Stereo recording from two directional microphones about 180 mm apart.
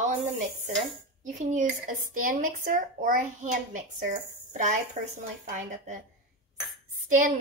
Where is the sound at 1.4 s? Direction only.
45° right (ahead or behind).